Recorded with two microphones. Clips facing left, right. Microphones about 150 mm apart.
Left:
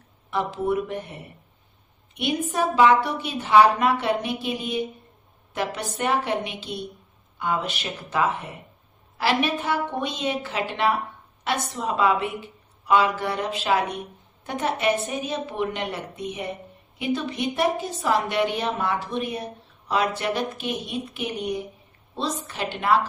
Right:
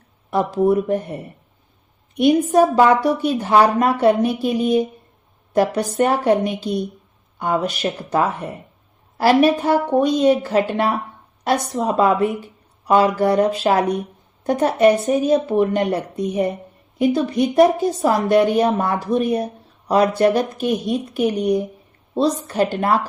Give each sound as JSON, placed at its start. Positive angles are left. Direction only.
{"t": 0.3, "sound": "a woman's voice", "side_deg": -40}